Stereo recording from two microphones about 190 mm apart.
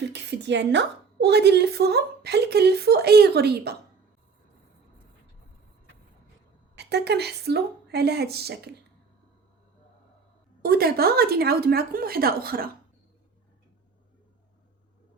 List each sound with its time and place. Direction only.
0.1 s a woman's voice: 65° right (ahead or behind)
6.7 s a woman's voice: 60° right (ahead or behind)
10.6 s a woman's voice: 50° right (ahead or behind)